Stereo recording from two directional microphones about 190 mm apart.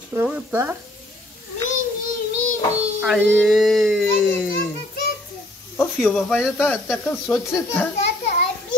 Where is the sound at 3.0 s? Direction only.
10° right (ahead or behind).